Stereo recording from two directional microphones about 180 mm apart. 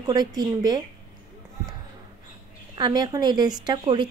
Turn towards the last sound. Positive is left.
turn(degrees=-25)  # may be behind; listen again after turning